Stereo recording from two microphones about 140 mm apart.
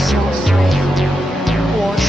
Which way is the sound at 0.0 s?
Centre (ahead or behind).